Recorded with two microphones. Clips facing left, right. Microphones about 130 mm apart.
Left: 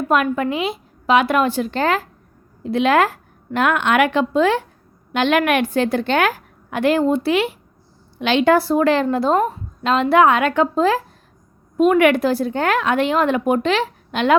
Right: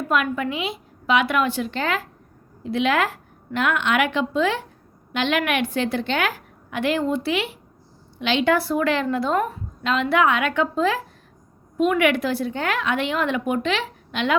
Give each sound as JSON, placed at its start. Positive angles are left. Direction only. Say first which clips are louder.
{"t": 0.1, "sound": "a woman's voice", "louder": "left 5 dB", "side_deg": 40}